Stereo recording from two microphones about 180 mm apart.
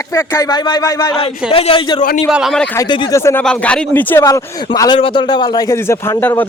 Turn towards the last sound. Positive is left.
turn(degrees=10)  # may be behind; listen again after turning